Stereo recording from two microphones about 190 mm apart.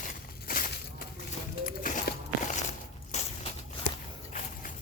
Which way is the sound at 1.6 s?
45° left (ahead or behind).